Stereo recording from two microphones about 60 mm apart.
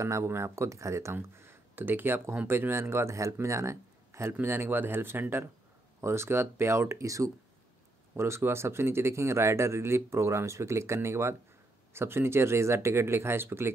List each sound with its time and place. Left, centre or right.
0.0 s speech: right
1.1 s speech: right
4.3 s speech: right
8.2 s speech: right